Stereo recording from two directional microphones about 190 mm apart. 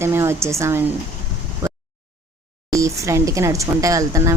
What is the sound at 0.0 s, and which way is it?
Speech, 15° right (ahead or behind).